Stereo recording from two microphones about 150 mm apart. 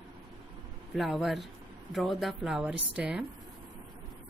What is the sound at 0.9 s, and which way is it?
Speech, centre (ahead or behind).